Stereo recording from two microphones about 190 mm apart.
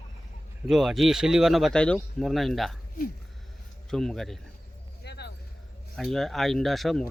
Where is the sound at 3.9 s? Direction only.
Centre (ahead or behind).